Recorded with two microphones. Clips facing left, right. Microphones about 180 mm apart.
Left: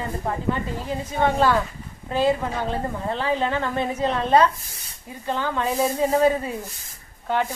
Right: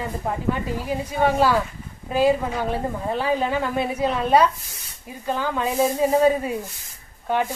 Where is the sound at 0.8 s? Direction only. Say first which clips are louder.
Right 1 dB; 10° right (ahead or behind).